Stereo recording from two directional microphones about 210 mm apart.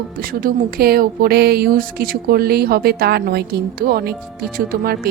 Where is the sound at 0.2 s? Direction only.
45° right (ahead or behind).